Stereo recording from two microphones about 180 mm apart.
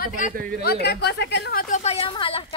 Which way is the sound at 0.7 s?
65° left (ahead or behind).